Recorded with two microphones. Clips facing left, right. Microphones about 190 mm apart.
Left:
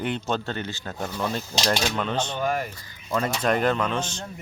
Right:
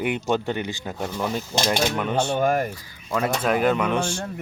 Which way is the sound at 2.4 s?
50° right (ahead or behind).